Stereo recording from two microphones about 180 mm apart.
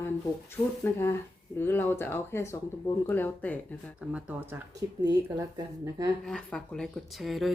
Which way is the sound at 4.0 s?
5° right (ahead or behind).